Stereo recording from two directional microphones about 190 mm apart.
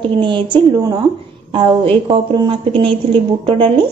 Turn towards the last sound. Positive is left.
turn(degrees=-25)  # may be behind; listen again after turning